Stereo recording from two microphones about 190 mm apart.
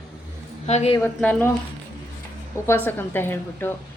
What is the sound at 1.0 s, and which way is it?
Speech, 5° left (ahead or behind).